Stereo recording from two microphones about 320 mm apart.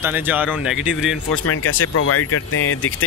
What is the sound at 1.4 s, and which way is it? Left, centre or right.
A man's voice, left.